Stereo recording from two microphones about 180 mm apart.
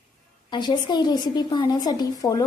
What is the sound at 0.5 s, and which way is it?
A woman's voice, 25° left (ahead or behind).